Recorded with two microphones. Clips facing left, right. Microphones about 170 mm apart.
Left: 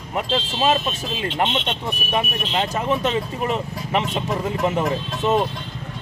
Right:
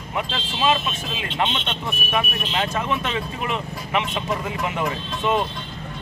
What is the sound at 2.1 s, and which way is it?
Speech, 30° left (ahead or behind).